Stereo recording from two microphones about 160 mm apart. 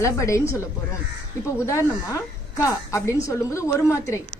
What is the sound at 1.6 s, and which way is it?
A woman's voice, 20° left (ahead or behind).